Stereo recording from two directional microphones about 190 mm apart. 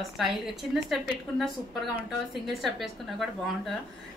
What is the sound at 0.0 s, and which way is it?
Speech, centre (ahead or behind).